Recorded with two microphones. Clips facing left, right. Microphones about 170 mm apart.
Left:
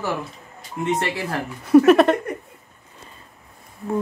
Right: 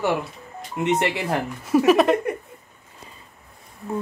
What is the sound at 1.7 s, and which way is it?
Speech, 5° right (ahead or behind).